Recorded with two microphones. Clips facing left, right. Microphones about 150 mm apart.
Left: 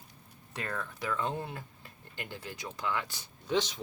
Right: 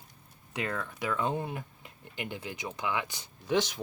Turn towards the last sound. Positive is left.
turn(degrees=-10)  # may be behind; listen again after turning